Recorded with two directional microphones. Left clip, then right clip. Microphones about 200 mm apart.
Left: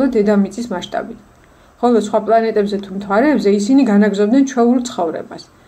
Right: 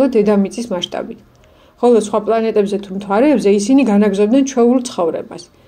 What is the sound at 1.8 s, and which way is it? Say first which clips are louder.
A woman's voice: right 2 dB; 20° right (ahead or behind).